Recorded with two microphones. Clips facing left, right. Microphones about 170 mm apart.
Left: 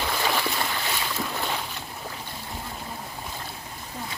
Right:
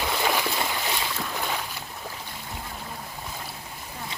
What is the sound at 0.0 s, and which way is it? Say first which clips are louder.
Boat: right 1 dB; 10° right (ahead or behind).